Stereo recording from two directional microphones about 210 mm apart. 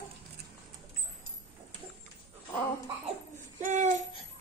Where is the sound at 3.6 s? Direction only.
35° right (ahead or behind).